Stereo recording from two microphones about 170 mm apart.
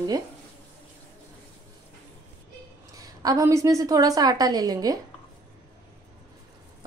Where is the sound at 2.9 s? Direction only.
20° right (ahead or behind).